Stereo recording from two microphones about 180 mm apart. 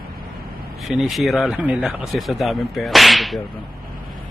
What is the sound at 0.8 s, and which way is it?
Speech, centre (ahead or behind).